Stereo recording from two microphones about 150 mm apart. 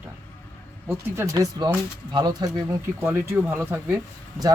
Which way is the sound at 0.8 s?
15° right (ahead or behind).